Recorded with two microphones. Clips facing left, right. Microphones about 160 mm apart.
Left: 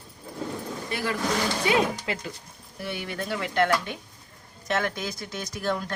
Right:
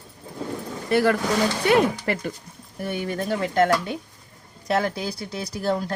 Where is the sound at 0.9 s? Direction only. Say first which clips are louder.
Right 9 dB; 65° right (ahead or behind).